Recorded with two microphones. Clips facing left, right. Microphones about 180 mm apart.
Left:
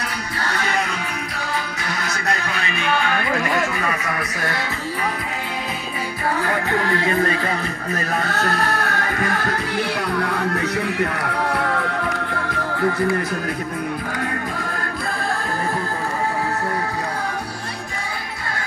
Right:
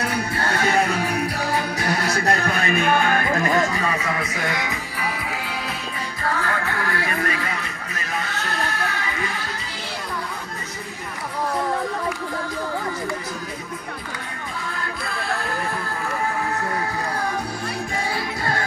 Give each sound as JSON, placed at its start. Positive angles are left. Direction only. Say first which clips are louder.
{"t": 0.5, "sound": "music", "louder": "right 3 dB", "side_deg": -50}
{"t": 1.9, "sound": "music", "louder": "right 6 dB", "side_deg": -40}
{"t": 2.2, "sound": "speech", "louder": "right 2 dB", "side_deg": -50}
{"t": 4.4, "sound": "music", "louder": "even", "side_deg": -20}
{"t": 6.4, "sound": "music", "louder": "left 4 dB", "side_deg": 20}
{"t": 8.1, "sound": "music", "louder": "left 4 dB", "side_deg": 50}
{"t": 10.2, "sound": "speech", "louder": "left 11 dB", "side_deg": 70}